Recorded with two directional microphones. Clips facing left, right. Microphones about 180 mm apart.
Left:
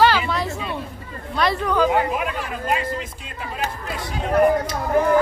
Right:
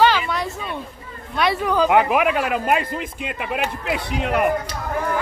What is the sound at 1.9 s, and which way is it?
Speech, 75° right (ahead or behind).